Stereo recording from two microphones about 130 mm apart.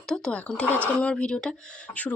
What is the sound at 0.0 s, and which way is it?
Speech, 5° left (ahead or behind).